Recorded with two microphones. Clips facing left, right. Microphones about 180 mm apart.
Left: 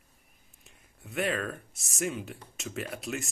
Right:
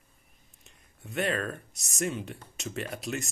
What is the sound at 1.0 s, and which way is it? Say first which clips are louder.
Speech: right 1 dB; centre (ahead or behind).